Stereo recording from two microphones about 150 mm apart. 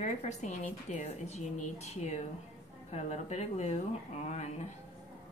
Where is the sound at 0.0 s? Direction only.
50° left (ahead or behind).